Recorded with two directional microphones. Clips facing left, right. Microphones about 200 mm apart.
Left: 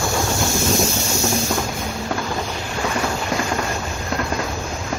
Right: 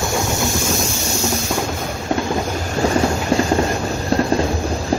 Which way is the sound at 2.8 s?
30° right (ahead or behind).